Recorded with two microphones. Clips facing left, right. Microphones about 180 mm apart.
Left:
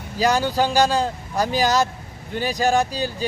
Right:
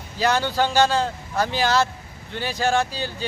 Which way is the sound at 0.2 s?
10° left (ahead or behind).